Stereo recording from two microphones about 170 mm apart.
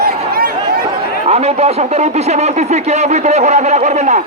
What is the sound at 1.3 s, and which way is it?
Speech, 40° right (ahead or behind).